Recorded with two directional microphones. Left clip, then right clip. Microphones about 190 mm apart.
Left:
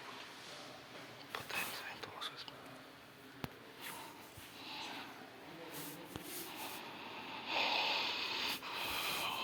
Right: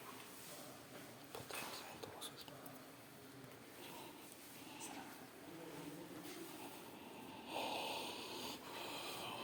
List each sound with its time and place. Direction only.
7.4 s sanding: 20° right (ahead or behind)